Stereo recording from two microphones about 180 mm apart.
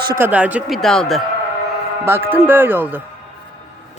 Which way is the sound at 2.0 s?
15° right (ahead or behind).